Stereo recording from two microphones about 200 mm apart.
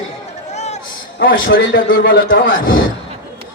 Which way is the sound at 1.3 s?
75° left (ahead or behind).